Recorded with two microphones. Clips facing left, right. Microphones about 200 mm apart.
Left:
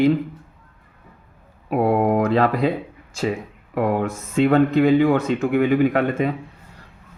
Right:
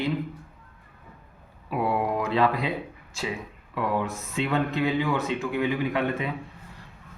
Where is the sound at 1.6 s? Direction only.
50° left (ahead or behind).